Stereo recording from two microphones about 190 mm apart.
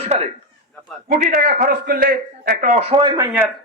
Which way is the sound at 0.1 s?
35° right (ahead or behind).